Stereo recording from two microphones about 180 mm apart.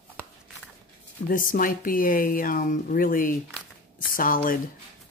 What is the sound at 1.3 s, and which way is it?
Speech, 50° left (ahead or behind).